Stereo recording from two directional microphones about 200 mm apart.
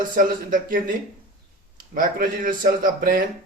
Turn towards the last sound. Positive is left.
turn(degrees=-45)  # may be behind; listen again after turning